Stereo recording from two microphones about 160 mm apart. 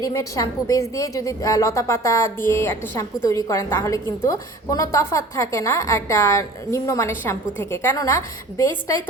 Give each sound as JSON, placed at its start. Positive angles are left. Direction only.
{"t": 0.0, "sound": "a woman's voice", "side_deg": 20}